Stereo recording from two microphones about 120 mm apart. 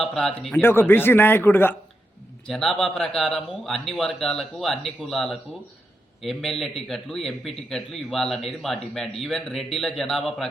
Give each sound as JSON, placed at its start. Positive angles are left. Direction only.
{"t": 0.0, "sound": "speech", "side_deg": 5}
{"t": 0.6, "sound": "a man's voice", "side_deg": 20}
{"t": 2.5, "sound": "speech", "side_deg": 0}